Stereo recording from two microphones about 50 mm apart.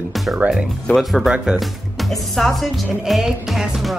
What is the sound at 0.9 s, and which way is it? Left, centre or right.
Speech, left.